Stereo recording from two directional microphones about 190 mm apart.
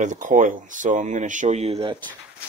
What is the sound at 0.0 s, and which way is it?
Speech, 40° right (ahead or behind).